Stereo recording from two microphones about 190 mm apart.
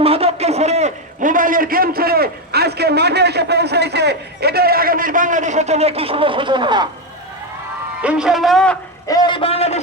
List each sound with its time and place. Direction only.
0.0 s a man's voice: 30° right (ahead or behind)
8.0 s a man's voice: 5° right (ahead or behind)
9.0 s a man's voice: 20° left (ahead or behind)